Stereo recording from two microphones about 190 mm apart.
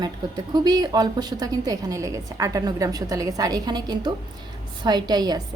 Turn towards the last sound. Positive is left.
turn(degrees=-20)  # may be behind; listen again after turning